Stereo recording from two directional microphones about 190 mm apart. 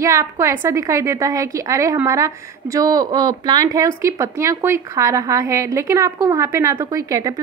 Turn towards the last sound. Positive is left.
turn(degrees=-20)  # may be behind; listen again after turning